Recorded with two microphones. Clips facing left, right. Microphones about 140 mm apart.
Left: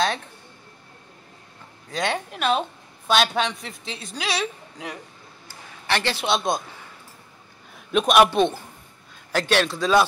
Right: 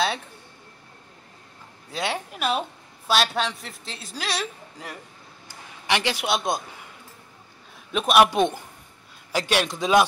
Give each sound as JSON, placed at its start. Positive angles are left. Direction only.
{"t": 1.9, "sound": "a man's voice", "side_deg": -5}
{"t": 5.9, "sound": "a man's voice", "side_deg": -10}
{"t": 7.9, "sound": "a man's voice", "side_deg": 0}